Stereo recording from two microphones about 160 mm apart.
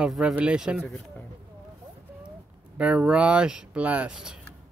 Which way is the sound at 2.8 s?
5° right (ahead or behind).